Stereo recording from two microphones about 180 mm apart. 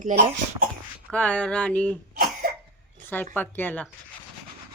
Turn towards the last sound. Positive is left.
turn(degrees=10)  # may be behind; listen again after turning